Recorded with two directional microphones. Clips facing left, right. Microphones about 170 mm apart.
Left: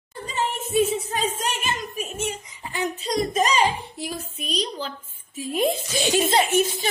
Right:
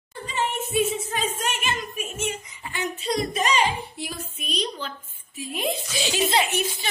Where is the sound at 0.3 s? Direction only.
40° left (ahead or behind).